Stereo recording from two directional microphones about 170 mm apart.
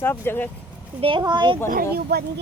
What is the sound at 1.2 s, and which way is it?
Speech, 25° right (ahead or behind).